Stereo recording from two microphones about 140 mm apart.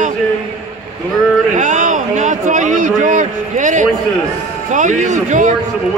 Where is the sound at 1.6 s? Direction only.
60° right (ahead or behind).